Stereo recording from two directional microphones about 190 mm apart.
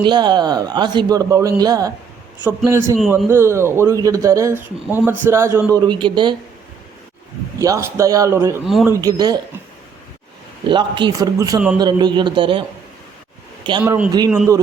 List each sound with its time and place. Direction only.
0.0 s a man's voice: 25° right (ahead or behind)
7.6 s a man's voice: 15° right (ahead or behind)
8.6 s speech: centre (ahead or behind)
8.9 s speech: 20° right (ahead or behind)
10.7 s speech: 25° right (ahead or behind)
13.8 s a man's voice: 10° right (ahead or behind)
14.1 s speech: 20° right (ahead or behind)